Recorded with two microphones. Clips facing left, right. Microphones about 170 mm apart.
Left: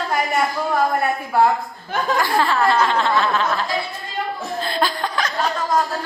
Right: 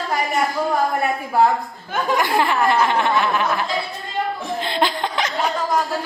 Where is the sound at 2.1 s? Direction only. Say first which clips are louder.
Even; 15° right (ahead or behind).